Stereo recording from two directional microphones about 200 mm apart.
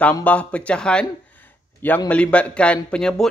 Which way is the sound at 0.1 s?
5° left (ahead or behind).